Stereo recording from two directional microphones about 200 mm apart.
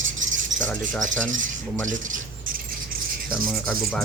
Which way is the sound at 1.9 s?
40° right (ahead or behind).